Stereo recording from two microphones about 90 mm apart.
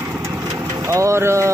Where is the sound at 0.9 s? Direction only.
35° right (ahead or behind).